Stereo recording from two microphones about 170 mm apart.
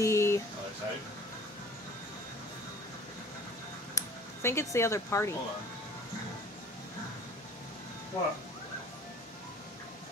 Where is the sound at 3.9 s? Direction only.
15° left (ahead or behind).